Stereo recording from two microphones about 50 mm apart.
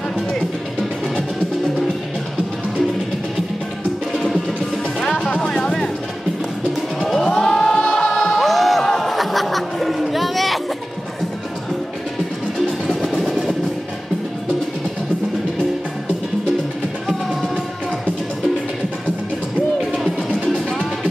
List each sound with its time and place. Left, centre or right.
4.1 s music: centre
5.2 s music: left
5.5 s music: centre
7.0 s music: centre
12.8 s vehicle: centre
17.1 s music: centre
20.5 s music: centre